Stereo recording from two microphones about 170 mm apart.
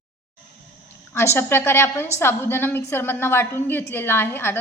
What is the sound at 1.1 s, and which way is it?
A woman's voice, 15° left (ahead or behind).